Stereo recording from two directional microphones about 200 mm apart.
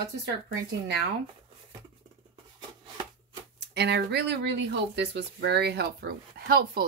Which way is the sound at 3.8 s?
55° right (ahead or behind).